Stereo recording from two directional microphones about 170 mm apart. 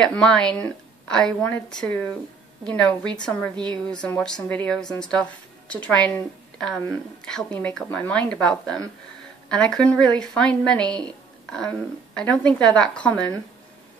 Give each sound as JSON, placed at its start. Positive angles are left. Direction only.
{"t": 0.0, "sound": "a woman's voice", "side_deg": 5}
{"t": 7.2, "sound": "a woman's voice", "side_deg": 5}